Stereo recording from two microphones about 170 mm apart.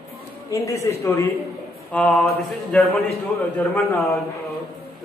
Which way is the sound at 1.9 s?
5° left (ahead or behind).